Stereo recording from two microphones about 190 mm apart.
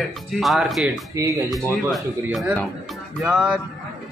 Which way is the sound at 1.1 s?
15° right (ahead or behind).